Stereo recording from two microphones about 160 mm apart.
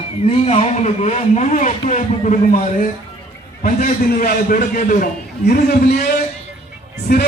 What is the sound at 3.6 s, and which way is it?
A man's voice, 60° left (ahead or behind).